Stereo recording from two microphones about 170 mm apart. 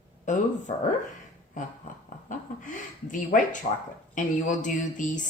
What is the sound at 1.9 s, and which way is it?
Speech, 50° left (ahead or behind).